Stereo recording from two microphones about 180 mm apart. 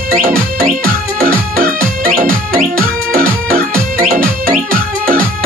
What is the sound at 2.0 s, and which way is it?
Music, 55° right (ahead or behind).